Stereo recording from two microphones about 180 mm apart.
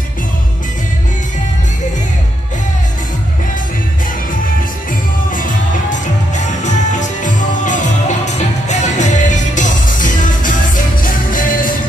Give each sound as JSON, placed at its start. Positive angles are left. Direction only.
{"t": 5.3, "sound": "music", "side_deg": 45}